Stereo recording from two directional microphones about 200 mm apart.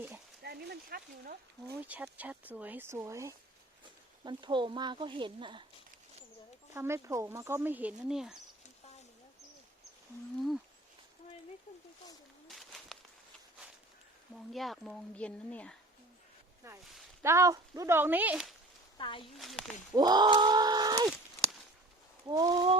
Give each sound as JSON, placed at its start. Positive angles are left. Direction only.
{"t": 0.4, "sound": "a sound", "side_deg": -55}
{"t": 1.8, "sound": "speech", "side_deg": -10}
{"t": 6.7, "sound": "speech", "side_deg": -15}
{"t": 12.5, "sound": "a sound", "side_deg": 0}
{"t": 14.5, "sound": "speech", "side_deg": 0}
{"t": 16.6, "sound": "speech", "side_deg": -15}
{"t": 18.9, "sound": "speech", "side_deg": 25}
{"t": 19.4, "sound": "speech", "side_deg": 0}
{"t": 19.9, "sound": "speech", "side_deg": -20}
{"t": 22.3, "sound": "speech", "side_deg": -20}